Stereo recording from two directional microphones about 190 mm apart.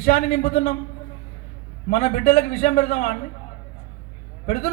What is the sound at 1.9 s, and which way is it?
Speech, 35° left (ahead or behind).